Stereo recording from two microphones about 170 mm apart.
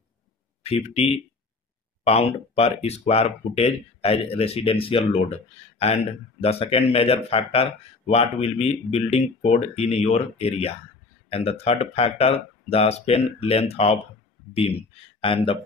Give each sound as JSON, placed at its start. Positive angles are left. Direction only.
{"t": 0.7, "sound": "speech", "side_deg": 35}